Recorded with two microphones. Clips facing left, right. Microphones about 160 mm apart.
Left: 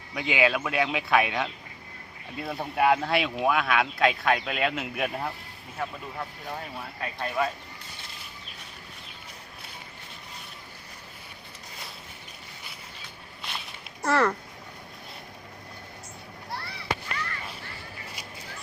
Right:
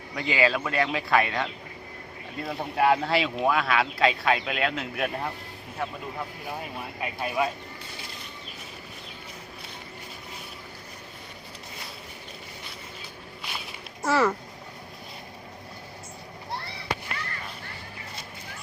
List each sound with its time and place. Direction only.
0.1 s speech: centre (ahead or behind)
14.0 s speech: 5° right (ahead or behind)